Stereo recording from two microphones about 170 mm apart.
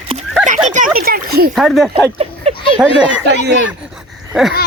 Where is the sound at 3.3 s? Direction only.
85° right.